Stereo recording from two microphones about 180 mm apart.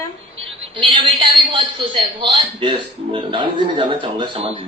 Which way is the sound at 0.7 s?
25° right (ahead or behind).